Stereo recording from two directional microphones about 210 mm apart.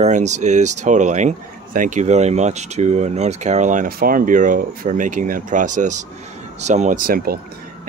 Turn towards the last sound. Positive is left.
turn(degrees=-45)  # may be behind; listen again after turning